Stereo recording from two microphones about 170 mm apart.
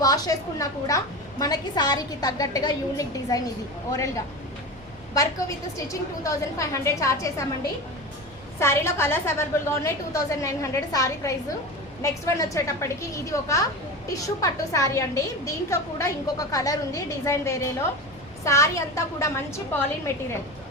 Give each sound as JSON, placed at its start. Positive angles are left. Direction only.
{"t": 0.0, "sound": "a woman's voice", "side_deg": 20}
{"t": 5.7, "sound": "a woman's voice", "side_deg": 20}
{"t": 8.5, "sound": "a woman's voice", "side_deg": 15}